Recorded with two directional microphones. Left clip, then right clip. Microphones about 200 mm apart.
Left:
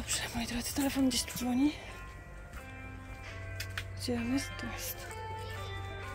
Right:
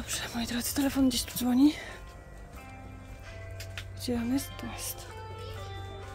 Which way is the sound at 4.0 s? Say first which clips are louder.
Right 3 dB; 10° right (ahead or behind).